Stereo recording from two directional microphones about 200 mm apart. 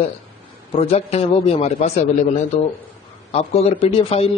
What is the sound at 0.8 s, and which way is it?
A man's voice, 30° left (ahead or behind).